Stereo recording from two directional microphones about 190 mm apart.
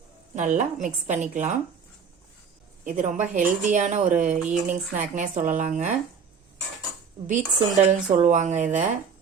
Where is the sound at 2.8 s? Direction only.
45° right (ahead or behind).